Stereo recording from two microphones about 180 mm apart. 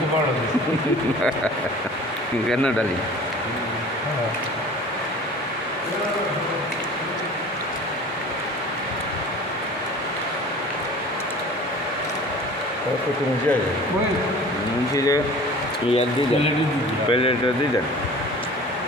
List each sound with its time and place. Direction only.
2.5 s a man's voice: 5° left (ahead or behind)
14.9 s speech: 20° left (ahead or behind)
17.1 s speech: 30° left (ahead or behind)